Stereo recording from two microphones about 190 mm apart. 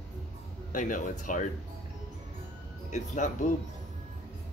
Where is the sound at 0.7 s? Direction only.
45° left (ahead or behind).